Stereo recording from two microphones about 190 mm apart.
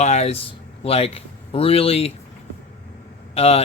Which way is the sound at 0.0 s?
35° left (ahead or behind).